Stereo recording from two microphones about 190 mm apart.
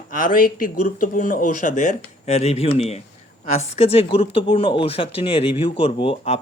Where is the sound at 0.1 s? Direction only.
45° left (ahead or behind).